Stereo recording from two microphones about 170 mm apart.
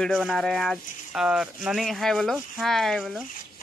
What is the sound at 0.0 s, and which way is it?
Speech, centre (ahead or behind).